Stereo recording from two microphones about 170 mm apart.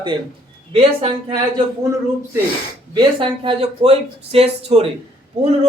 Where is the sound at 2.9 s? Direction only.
30° right (ahead or behind).